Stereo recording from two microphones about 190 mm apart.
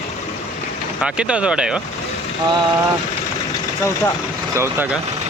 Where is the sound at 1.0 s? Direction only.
5° right (ahead or behind).